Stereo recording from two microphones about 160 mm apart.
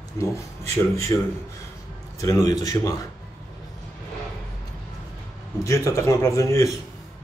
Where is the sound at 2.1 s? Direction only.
20° left (ahead or behind).